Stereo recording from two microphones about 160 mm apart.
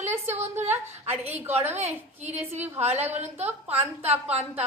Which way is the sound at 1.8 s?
45° right (ahead or behind).